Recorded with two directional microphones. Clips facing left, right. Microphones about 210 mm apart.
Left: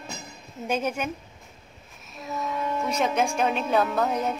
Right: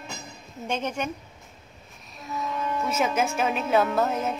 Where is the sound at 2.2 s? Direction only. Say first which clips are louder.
Left 1 dB; centre (ahead or behind).